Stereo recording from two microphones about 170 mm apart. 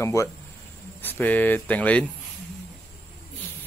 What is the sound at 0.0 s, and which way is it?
Speech, 15° left (ahead or behind).